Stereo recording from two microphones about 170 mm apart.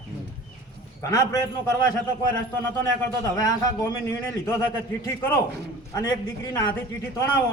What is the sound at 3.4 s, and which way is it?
A man's voice, 20° left (ahead or behind).